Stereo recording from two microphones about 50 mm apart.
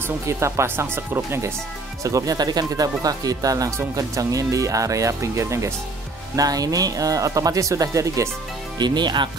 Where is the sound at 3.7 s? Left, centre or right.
Right.